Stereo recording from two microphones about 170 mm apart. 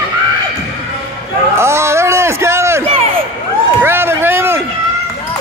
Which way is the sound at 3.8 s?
15° right (ahead or behind).